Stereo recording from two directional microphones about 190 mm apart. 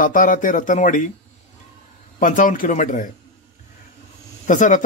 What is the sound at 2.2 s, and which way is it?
Speech, 45° left (ahead or behind).